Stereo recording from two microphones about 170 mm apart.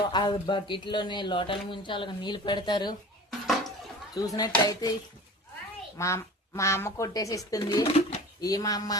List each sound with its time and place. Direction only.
0.1 s speech: 25° left (ahead or behind)
4.1 s speech: 20° left (ahead or behind)
6.0 s speech: 15° left (ahead or behind)
7.9 s speech: 40° left (ahead or behind)
8.4 s speech: 20° left (ahead or behind)